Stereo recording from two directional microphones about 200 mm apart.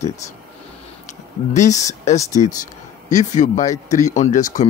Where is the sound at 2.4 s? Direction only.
35° left (ahead or behind).